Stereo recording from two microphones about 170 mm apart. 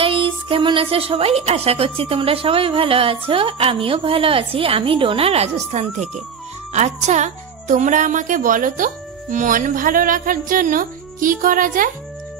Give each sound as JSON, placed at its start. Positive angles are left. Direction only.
{"t": 0.0, "sound": "music", "side_deg": -30}
{"t": 1.4, "sound": "speech", "side_deg": -35}